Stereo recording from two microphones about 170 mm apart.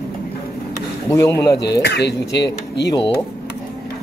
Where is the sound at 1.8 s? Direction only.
90° left.